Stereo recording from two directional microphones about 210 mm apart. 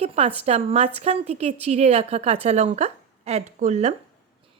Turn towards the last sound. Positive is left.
turn(degrees=-35)  # may be behind; listen again after turning